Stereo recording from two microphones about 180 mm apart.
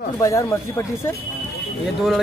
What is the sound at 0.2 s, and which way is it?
Speech, 15° left (ahead or behind).